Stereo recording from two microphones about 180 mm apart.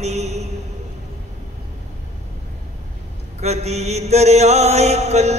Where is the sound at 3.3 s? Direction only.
35° right (ahead or behind).